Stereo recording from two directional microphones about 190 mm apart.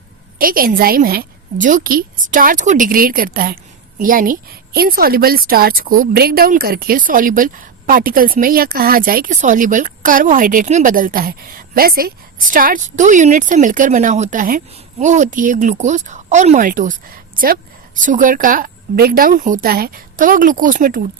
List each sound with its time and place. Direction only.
0.3 s a woman's voice: 50° right (ahead or behind)